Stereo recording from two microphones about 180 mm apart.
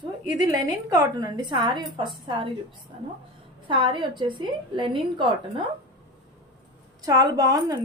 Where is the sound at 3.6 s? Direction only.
30° right (ahead or behind).